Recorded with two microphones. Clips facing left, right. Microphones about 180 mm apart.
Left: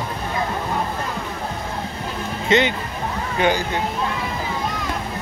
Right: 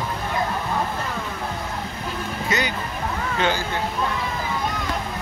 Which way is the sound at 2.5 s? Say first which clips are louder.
Left 8 dB; 25° left (ahead or behind).